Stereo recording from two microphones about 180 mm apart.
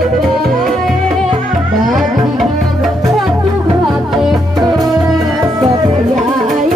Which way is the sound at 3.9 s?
Centre (ahead or behind).